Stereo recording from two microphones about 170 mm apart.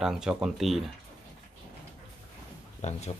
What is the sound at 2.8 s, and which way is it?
Speech, 40° left (ahead or behind).